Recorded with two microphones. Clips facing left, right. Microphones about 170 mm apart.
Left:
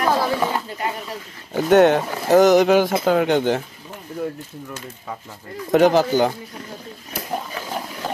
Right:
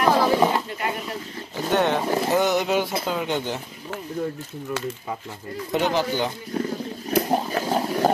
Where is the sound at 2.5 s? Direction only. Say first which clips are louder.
Left 8 dB; 45° left (ahead or behind).